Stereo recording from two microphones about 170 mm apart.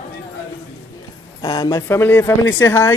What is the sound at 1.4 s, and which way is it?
Speech, 20° left (ahead or behind).